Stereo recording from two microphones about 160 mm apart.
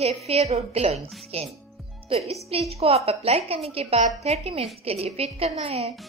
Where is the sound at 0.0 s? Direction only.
40° right (ahead or behind).